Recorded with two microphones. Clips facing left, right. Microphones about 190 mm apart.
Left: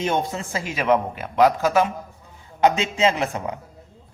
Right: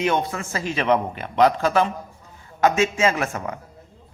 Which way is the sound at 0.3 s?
20° left (ahead or behind).